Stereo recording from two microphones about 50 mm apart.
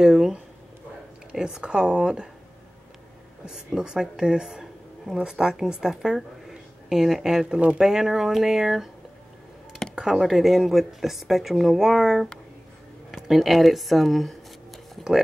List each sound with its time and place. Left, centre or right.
0.0 s speech: centre
3.4 s speech: centre
9.9 s speech: centre
15.0 s a sound: centre